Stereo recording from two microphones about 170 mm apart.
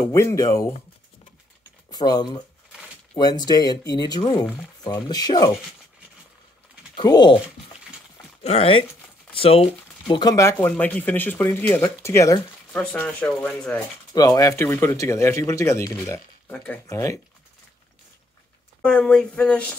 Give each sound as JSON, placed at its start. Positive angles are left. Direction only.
{"t": 0.0, "sound": "speech", "side_deg": 15}
{"t": 1.9, "sound": "speech", "side_deg": 25}
{"t": 7.0, "sound": "speech", "side_deg": 25}
{"t": 8.4, "sound": "speech", "side_deg": 35}
{"t": 14.1, "sound": "speech", "side_deg": 20}
{"t": 18.8, "sound": "speech", "side_deg": 5}